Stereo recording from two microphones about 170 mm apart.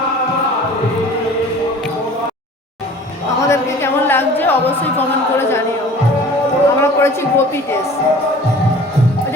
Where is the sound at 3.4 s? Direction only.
15° left (ahead or behind).